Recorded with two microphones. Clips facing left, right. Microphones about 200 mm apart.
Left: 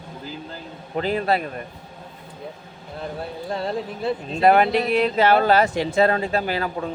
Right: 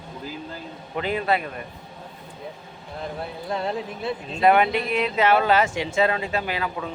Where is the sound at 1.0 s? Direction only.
35° left (ahead or behind).